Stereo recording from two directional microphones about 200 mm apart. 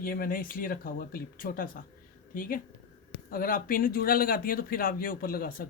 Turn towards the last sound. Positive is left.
turn(degrees=45)  # may be behind; listen again after turning